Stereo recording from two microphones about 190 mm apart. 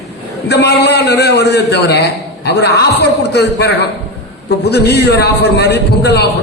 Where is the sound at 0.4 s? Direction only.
60° left (ahead or behind).